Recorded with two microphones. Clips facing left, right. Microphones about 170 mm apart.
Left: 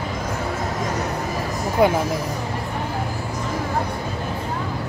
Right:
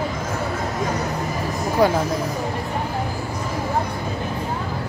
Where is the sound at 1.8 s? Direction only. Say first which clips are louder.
Left 1 dB; 20° left (ahead or behind).